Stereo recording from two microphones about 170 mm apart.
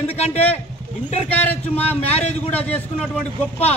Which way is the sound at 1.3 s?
10° left (ahead or behind).